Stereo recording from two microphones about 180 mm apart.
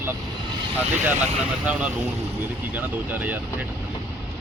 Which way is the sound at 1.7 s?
5° right (ahead or behind).